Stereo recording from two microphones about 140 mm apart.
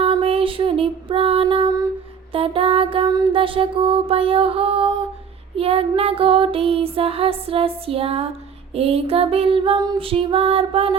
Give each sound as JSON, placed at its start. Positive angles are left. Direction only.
{"t": 0.0, "sound": "music", "side_deg": -45}
{"t": 2.3, "sound": "child singing", "side_deg": -40}
{"t": 3.3, "sound": "music", "side_deg": -40}
{"t": 5.5, "sound": "child singing", "side_deg": -45}